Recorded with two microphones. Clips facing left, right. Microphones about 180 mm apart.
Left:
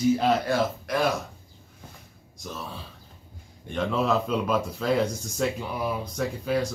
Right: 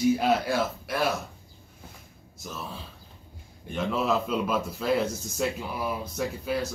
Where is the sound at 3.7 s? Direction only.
5° right (ahead or behind).